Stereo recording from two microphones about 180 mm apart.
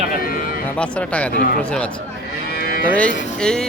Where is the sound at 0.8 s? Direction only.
5° left (ahead or behind).